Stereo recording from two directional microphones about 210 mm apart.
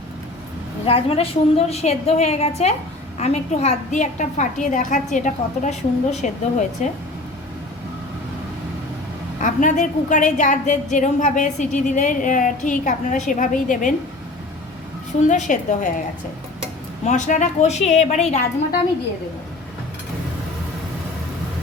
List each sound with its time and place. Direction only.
0.9 s a woman's voice: 25° left (ahead or behind)
9.4 s a woman's voice: 35° left (ahead or behind)
15.3 s a woman's voice: 35° left (ahead or behind)
17.1 s a woman's voice: 35° left (ahead or behind)